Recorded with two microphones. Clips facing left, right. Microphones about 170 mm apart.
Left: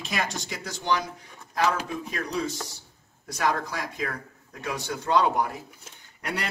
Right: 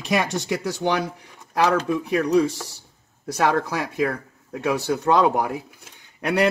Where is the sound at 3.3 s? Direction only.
65° right (ahead or behind).